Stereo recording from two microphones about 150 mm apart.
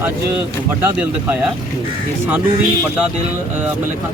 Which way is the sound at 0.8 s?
10° right (ahead or behind).